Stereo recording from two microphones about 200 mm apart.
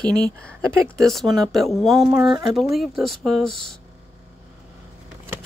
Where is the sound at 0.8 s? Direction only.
Centre (ahead or behind).